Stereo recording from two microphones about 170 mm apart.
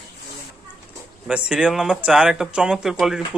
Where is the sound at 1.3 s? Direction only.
5° right (ahead or behind).